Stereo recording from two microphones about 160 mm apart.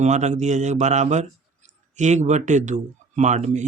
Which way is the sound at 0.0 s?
45° right (ahead or behind).